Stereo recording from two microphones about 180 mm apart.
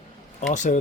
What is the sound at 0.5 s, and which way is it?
Speech, 45° left (ahead or behind).